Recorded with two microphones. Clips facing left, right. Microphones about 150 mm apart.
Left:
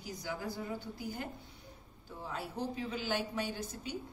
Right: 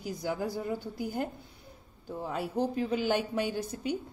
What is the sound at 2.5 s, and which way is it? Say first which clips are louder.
A woman's voice: right 10 dB; 60° right (ahead or behind).